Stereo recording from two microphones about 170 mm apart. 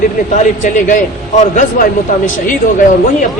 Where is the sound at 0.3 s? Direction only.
50° left (ahead or behind).